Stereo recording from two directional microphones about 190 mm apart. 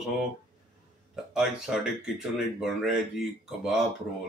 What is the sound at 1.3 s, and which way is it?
Speech, 5° right (ahead or behind).